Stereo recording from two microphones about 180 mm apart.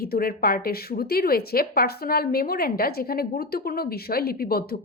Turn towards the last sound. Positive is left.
turn(degrees=55)  # may be behind; listen again after turning